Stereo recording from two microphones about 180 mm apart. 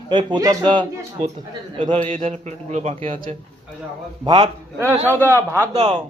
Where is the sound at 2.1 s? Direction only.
45° right (ahead or behind).